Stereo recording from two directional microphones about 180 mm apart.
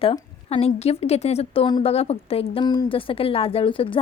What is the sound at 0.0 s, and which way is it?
A woman's voice, 30° left (ahead or behind).